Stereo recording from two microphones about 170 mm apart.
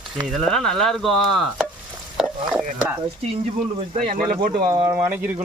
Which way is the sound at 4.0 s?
50° right (ahead or behind).